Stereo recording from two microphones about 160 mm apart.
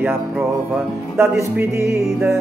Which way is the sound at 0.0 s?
15° right (ahead or behind).